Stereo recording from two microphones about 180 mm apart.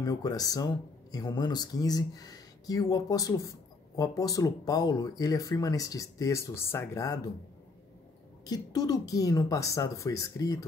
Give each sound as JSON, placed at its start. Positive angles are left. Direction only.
{"t": 0.0, "sound": "speech", "side_deg": 20}
{"t": 8.5, "sound": "speech", "side_deg": 20}